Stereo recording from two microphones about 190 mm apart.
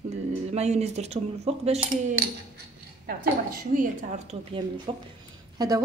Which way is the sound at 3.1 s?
50° right (ahead or behind).